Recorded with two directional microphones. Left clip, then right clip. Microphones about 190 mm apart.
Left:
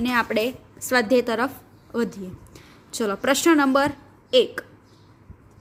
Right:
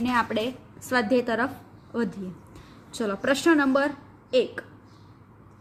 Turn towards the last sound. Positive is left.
turn(degrees=40)  # may be behind; listen again after turning